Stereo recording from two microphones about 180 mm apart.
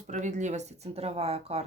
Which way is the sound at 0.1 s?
40° right (ahead or behind).